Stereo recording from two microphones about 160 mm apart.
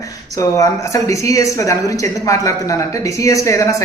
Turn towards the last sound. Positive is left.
turn(degrees=20)  # may be behind; listen again after turning